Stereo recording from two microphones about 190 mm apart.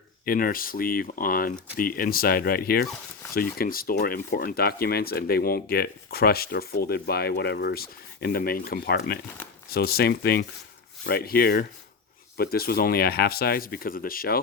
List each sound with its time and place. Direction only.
0.3 s speech: 50° left (ahead or behind)